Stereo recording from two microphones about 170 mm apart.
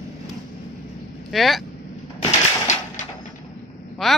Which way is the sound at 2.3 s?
45° left (ahead or behind).